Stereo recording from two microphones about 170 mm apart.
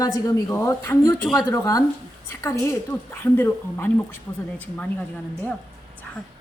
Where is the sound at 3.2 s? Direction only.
10° left (ahead or behind).